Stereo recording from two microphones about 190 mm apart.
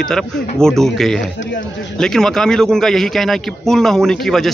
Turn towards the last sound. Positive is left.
turn(degrees=0)  # may be behind; listen again after turning